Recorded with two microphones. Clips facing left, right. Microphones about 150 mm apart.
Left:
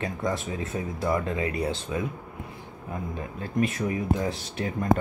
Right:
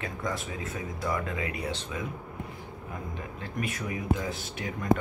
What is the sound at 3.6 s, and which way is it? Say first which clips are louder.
Speech: left 4 dB; 30° left (ahead or behind).